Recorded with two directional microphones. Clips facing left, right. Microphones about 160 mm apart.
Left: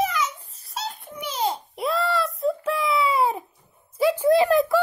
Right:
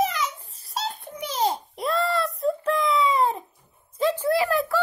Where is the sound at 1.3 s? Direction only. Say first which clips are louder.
Right 1 dB; 40° right (ahead or behind).